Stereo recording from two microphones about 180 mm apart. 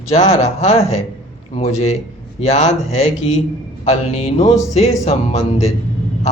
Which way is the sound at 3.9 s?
35° left (ahead or behind).